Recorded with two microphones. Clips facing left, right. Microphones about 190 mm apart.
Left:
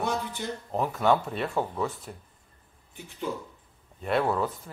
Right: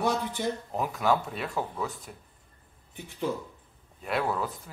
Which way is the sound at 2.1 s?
45° left (ahead or behind).